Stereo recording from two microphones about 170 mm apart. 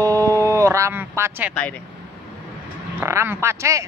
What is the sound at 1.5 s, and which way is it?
Speech, 5° left (ahead or behind).